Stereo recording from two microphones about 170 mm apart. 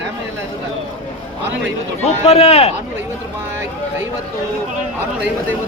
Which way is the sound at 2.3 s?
40° left (ahead or behind).